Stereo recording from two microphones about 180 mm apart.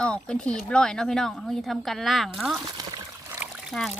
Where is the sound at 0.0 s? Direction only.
5° left (ahead or behind).